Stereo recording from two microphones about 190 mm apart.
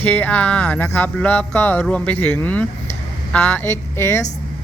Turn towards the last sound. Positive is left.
turn(degrees=15)  # may be behind; listen again after turning